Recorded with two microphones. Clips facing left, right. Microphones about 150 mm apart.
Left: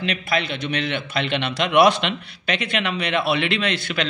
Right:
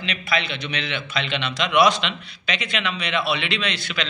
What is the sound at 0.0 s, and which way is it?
A man's voice, 50° left (ahead or behind).